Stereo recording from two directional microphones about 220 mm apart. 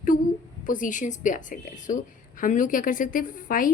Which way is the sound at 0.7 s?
35° left (ahead or behind).